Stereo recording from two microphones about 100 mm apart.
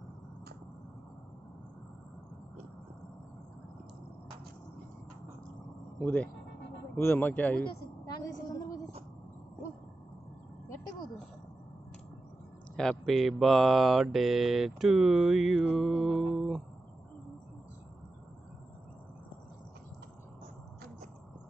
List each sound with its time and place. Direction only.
5.9 s speech: 15° left (ahead or behind)
8.0 s a sound: 40° left (ahead or behind)
13.0 s speech: centre (ahead or behind)
14.1 s mantra: centre (ahead or behind)